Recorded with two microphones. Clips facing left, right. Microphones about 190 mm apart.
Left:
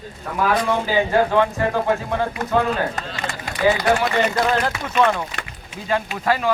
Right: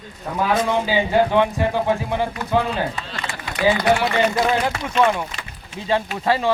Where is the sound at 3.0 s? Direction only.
45° left (ahead or behind).